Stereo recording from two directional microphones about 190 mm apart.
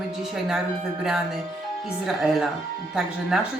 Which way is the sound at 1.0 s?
5° right (ahead or behind).